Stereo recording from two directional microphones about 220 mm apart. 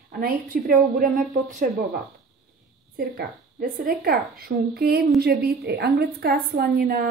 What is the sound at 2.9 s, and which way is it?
A woman's voice, 40° right (ahead or behind).